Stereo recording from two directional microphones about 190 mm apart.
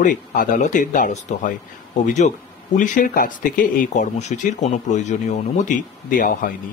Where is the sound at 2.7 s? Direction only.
40° left (ahead or behind).